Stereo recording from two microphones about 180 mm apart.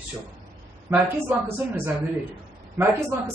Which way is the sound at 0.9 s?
10° right (ahead or behind).